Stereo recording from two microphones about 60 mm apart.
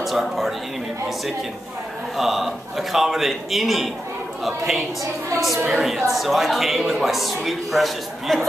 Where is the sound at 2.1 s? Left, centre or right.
Centre.